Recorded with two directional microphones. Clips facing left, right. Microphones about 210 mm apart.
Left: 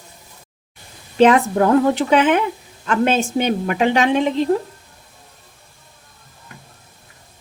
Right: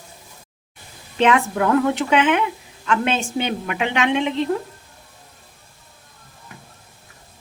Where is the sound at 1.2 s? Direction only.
35° left (ahead or behind).